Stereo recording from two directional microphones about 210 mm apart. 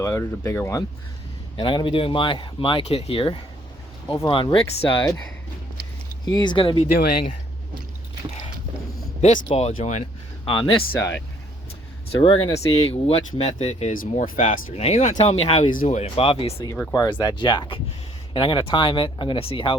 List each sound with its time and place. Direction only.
0.0 s speech: 15° left (ahead or behind)
6.2 s speech: 20° left (ahead or behind)
6.9 s speech: 45° left (ahead or behind)
9.2 s speech: 30° left (ahead or behind)
10.4 s speech: 25° left (ahead or behind)
12.2 s speech: 25° left (ahead or behind)